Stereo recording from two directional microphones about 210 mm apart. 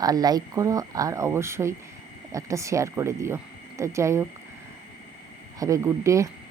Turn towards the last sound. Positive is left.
turn(degrees=-15)  # may be behind; listen again after turning